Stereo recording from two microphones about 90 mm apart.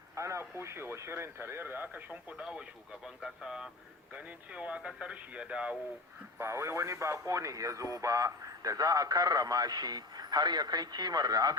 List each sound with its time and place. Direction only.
0.2 s speech: 30° right (ahead or behind); by 5.7 s 10° right (ahead or behind)
6.4 s speech: 30° right (ahead or behind); by 11.5 s 45° right (ahead or behind)